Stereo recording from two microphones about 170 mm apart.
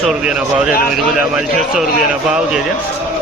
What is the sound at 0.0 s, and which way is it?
Speech, 5° right (ahead or behind).